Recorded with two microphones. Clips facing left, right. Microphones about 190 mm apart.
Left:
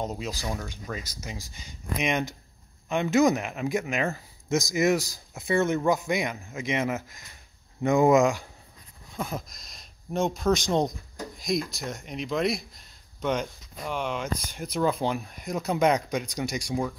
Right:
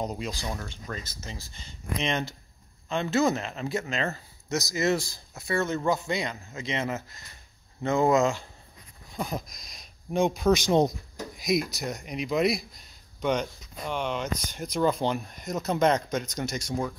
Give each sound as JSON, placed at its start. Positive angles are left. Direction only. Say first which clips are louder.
{"t": 0.0, "sound": "speech", "louder": "even", "side_deg": 0}
{"t": 9.1, "sound": "speech", "louder": "right 1 dB", "side_deg": 0}